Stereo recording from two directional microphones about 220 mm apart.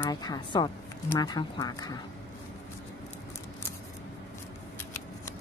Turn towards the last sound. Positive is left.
turn(degrees=10)  # may be behind; listen again after turning